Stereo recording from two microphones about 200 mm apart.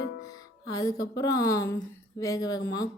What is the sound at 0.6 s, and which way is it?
A woman's voice, 15° left (ahead or behind).